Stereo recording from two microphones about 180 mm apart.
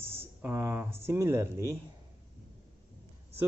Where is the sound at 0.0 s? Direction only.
15° right (ahead or behind).